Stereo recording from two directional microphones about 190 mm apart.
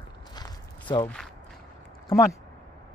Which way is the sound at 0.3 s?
20° left (ahead or behind).